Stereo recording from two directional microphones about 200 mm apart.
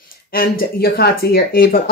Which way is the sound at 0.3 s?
45° left (ahead or behind).